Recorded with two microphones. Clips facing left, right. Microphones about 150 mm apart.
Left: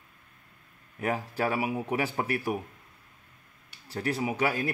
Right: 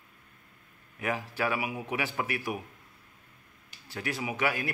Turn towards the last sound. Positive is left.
turn(degrees=30)  # may be behind; listen again after turning